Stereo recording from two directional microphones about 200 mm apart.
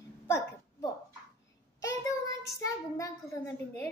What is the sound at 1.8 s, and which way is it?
Child singing, 15° left (ahead or behind).